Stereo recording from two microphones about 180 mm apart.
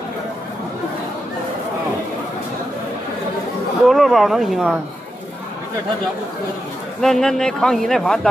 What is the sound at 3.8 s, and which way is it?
Speech, centre (ahead or behind).